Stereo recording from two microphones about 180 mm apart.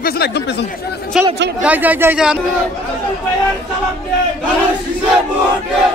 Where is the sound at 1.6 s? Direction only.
10° right (ahead or behind).